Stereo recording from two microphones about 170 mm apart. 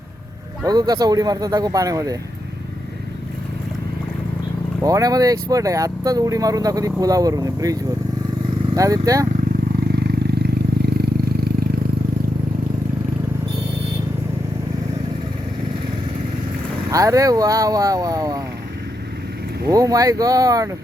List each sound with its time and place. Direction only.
0.6 s speech: 20° right (ahead or behind)
4.8 s speech: 20° right (ahead or behind)
9.9 s vehicle: 70° right (ahead or behind)
16.9 s speech: 20° right (ahead or behind)
19.6 s speech: 20° right (ahead or behind)